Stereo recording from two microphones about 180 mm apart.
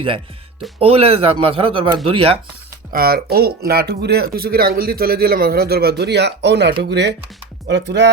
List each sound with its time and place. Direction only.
0.8 s speech: 35° right (ahead or behind)
2.9 s speech: 55° right (ahead or behind)